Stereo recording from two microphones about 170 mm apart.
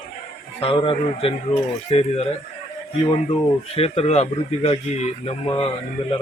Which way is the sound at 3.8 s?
35° left (ahead or behind).